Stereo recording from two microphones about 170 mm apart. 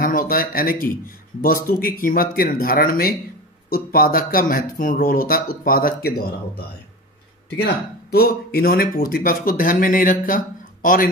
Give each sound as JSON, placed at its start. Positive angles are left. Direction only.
{"t": 0.0, "sound": "speech", "side_deg": 55}
{"t": 7.5, "sound": "speech", "side_deg": 65}